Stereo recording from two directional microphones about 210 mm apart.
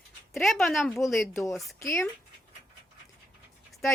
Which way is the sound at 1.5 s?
Centre (ahead or behind).